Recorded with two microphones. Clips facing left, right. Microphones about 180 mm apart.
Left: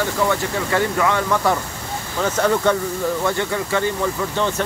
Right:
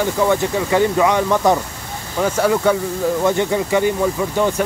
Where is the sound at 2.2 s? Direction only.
10° right (ahead or behind).